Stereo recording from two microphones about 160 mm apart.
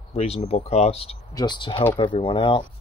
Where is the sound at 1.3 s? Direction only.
30° left (ahead or behind).